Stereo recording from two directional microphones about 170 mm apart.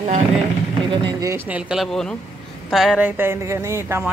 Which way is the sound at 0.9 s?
25° right (ahead or behind).